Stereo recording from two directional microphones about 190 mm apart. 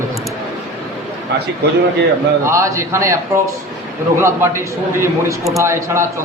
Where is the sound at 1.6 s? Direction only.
60° right (ahead or behind).